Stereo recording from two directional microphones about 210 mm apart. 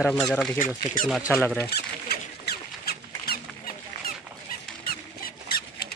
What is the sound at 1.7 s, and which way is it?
Squeak, 50° left (ahead or behind).